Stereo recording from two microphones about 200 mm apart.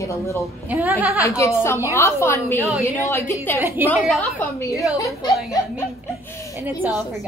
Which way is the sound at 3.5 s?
10° right (ahead or behind).